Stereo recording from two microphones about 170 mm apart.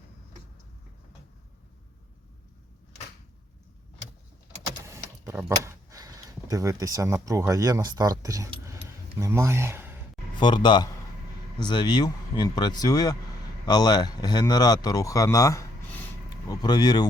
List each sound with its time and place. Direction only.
4.9 s speech: 15° right (ahead or behind)
10.3 s speech: 25° left (ahead or behind)